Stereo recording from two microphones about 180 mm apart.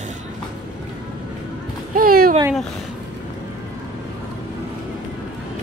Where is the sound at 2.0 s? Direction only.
55° right (ahead or behind).